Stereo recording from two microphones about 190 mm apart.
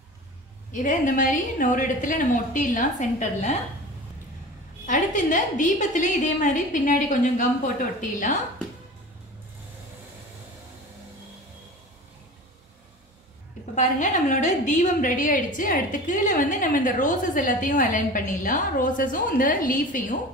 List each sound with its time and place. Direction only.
0.7 s a woman's voice: 45° left (ahead or behind)
4.8 s a woman's voice: 40° left (ahead or behind)
13.7 s a woman's voice: 40° left (ahead or behind)